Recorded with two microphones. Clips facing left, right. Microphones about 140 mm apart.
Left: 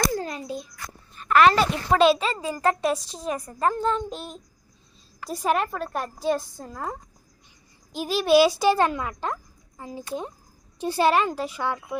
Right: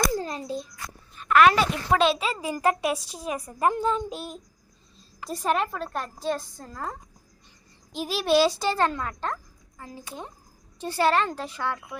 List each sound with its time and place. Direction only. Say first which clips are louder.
0.3 s babbling: right 1 dB; 35° right (ahead or behind)
1.1 s a woman's voice: left 1 dB; centre (ahead or behind)
7.9 s a woman's voice: left 3 dB; centre (ahead or behind)
8.4 s a child's voice: left 4 dB; 10° left (ahead or behind)